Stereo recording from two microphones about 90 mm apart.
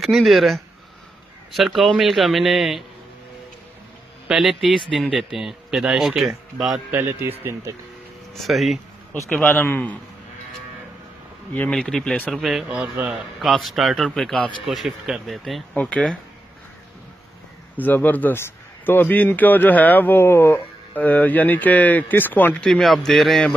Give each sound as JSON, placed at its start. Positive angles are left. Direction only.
{"t": 0.0, "sound": "speech", "side_deg": 0}
{"t": 4.3, "sound": "speech", "side_deg": 0}
{"t": 6.9, "sound": "a man's voice", "side_deg": -25}
{"t": 8.3, "sound": "speech", "side_deg": 0}
{"t": 9.6, "sound": "a man's voice", "side_deg": 25}
{"t": 11.5, "sound": "speech", "side_deg": 10}
{"t": 12.3, "sound": "speech", "side_deg": -5}
{"t": 13.4, "sound": "speech", "side_deg": 0}
{"t": 15.7, "sound": "speech", "side_deg": 15}
{"t": 17.7, "sound": "a man's voice", "side_deg": 20}
{"t": 22.7, "sound": "speech", "side_deg": 5}